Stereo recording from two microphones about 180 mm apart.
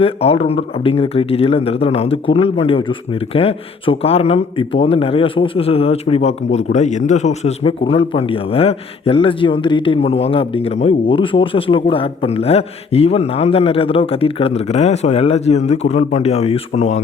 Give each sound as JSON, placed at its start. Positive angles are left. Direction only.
{"t": 0.0, "sound": "speech", "side_deg": 30}